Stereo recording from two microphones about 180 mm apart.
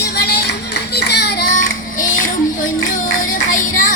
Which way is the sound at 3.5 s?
45° left (ahead or behind).